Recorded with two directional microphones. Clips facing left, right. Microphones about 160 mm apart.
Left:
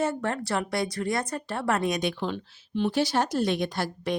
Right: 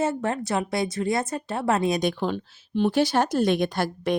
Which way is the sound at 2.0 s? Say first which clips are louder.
Right 4 dB; 45° right (ahead or behind).